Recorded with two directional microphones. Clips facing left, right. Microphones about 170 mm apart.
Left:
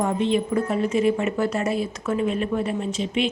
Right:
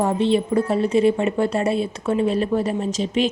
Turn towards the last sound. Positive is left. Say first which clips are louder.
# right 3 dB
turn(degrees=-40)  # may be behind; listen again after turning